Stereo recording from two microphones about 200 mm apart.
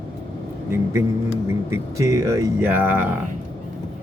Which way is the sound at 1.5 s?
15° right (ahead or behind).